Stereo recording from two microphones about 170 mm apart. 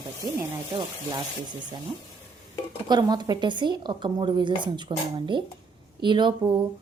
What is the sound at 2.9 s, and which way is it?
Speech, 25° right (ahead or behind).